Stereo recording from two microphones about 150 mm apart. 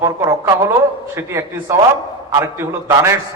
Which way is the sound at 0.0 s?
20° right (ahead or behind).